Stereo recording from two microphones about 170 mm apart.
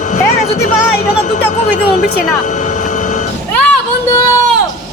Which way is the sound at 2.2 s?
45° left (ahead or behind).